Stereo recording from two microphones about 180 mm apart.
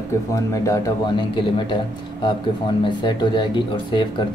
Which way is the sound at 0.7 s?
20° left (ahead or behind).